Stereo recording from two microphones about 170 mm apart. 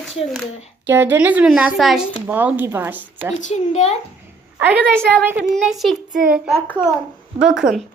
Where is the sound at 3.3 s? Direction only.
45° left (ahead or behind).